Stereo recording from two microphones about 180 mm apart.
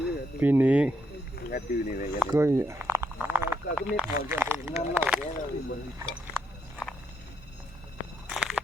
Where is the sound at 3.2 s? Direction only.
10° right (ahead or behind).